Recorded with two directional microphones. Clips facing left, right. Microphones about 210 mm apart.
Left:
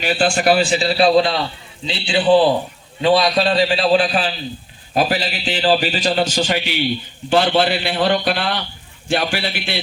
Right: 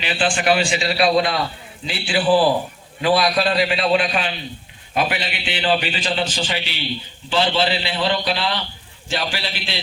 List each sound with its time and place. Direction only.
0.0 s a man's voice: 45° left (ahead or behind)